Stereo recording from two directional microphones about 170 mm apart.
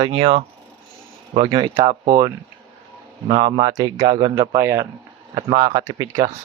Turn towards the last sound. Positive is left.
turn(degrees=-20)  # may be behind; listen again after turning